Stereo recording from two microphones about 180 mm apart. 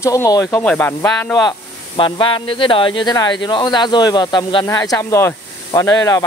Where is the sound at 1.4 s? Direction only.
25° left (ahead or behind).